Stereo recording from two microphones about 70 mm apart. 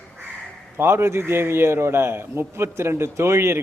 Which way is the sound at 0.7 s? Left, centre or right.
Right.